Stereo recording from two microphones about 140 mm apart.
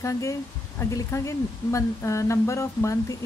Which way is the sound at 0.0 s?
20° left (ahead or behind).